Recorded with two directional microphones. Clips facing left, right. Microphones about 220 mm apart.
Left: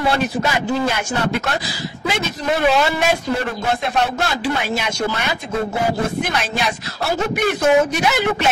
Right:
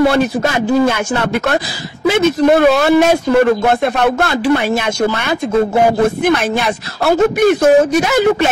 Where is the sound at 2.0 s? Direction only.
55° right (ahead or behind).